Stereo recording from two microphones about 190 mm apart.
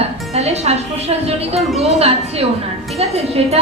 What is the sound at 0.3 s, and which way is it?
A woman's voice, 35° right (ahead or behind).